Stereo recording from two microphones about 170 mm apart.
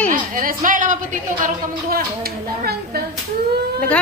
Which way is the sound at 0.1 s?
55° right (ahead or behind).